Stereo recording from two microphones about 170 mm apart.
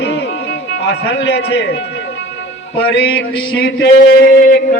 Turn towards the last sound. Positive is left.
turn(degrees=65)  # may be behind; listen again after turning